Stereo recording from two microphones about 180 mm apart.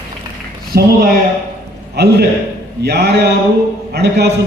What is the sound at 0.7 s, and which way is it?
Speech, 60° right (ahead or behind).